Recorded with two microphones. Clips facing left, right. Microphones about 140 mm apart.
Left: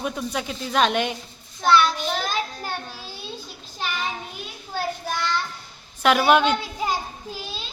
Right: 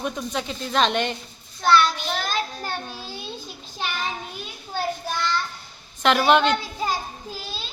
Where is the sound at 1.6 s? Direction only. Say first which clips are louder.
Even; 15° left (ahead or behind).